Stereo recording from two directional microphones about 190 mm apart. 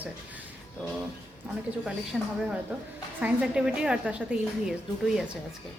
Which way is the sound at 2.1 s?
Centre (ahead or behind).